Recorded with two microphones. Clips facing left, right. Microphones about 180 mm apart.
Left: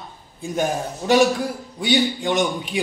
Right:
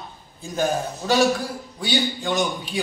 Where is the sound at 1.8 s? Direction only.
20° left (ahead or behind).